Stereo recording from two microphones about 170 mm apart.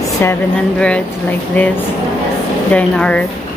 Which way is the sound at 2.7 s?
5° left (ahead or behind).